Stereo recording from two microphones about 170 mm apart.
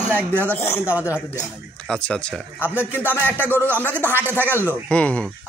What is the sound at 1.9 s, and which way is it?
Speech, 5° left (ahead or behind).